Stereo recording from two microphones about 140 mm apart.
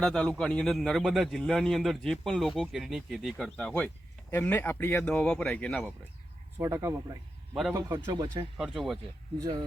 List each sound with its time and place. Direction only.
0.0 s a man's voice: 5° left (ahead or behind)
3.8 s speech: 10° left (ahead or behind)
6.6 s speech: 20° right (ahead or behind)
8.5 s a man's voice: 5° right (ahead or behind)
9.4 s speech: 30° right (ahead or behind)